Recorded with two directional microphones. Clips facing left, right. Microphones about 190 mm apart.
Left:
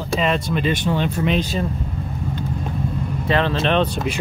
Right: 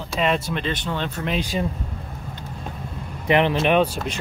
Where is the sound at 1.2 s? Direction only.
10° right (ahead or behind).